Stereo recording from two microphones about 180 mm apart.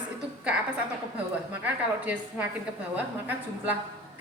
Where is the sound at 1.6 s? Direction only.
10° right (ahead or behind).